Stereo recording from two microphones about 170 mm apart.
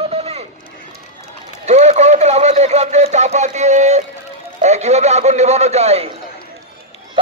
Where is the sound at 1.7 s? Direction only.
40° right (ahead or behind).